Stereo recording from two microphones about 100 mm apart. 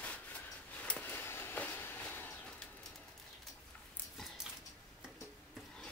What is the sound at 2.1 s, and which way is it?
Bird, 20° left (ahead or behind).